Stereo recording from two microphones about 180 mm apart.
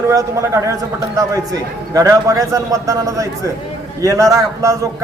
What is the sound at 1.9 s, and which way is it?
A man's voice, 20° right (ahead or behind).